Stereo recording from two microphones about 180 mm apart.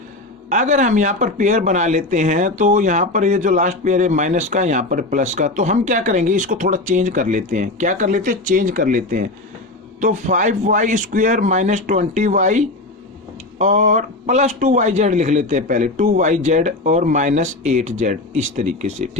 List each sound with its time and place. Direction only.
0.5 s a man's voice: 40° right (ahead or behind)